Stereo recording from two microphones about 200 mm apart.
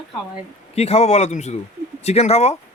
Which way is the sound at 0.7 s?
30° left (ahead or behind).